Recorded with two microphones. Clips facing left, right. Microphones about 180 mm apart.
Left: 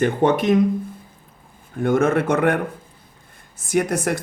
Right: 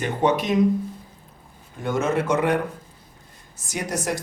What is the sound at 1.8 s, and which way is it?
Speech, 55° left (ahead or behind).